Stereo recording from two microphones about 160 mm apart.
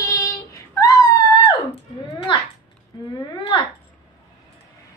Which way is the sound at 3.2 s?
35° left (ahead or behind).